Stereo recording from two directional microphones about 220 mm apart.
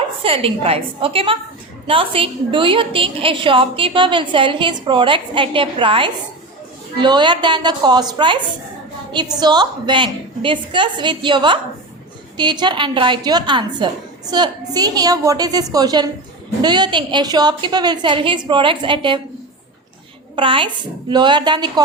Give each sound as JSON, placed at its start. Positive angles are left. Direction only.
{"t": 0.2, "sound": "a woman's voice", "side_deg": -25}
{"t": 9.4, "sound": "a woman's voice", "side_deg": -20}
{"t": 20.3, "sound": "a woman's voice", "side_deg": -25}